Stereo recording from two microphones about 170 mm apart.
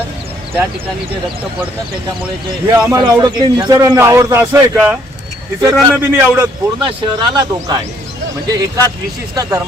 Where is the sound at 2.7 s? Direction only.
20° right (ahead or behind).